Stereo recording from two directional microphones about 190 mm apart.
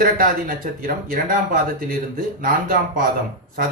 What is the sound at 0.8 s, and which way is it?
Speech, 50° right (ahead or behind).